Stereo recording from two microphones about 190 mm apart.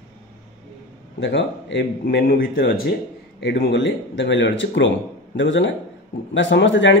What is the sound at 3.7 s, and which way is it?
Speech, 75° left (ahead or behind).